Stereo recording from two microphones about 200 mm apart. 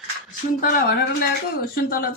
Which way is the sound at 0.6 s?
45° left (ahead or behind).